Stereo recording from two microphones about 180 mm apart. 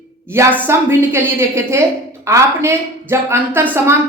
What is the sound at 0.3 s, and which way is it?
Speech, 10° right (ahead or behind).